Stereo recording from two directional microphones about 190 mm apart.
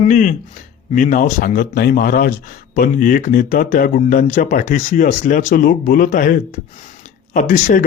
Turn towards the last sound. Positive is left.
turn(degrees=45)  # may be behind; listen again after turning